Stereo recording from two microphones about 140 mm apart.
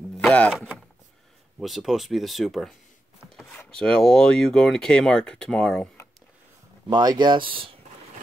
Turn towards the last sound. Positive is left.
turn(degrees=-40)  # may be behind; listen again after turning